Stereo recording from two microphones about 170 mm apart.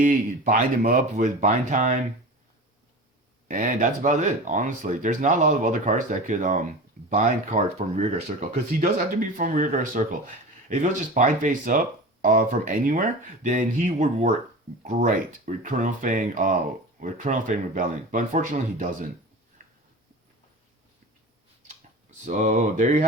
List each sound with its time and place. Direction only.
0.0 s speech: 50° right (ahead or behind)
3.5 s speech: 50° right (ahead or behind)
19.6 s a sound: 55° right (ahead or behind)
22.2 s speech: 45° right (ahead or behind)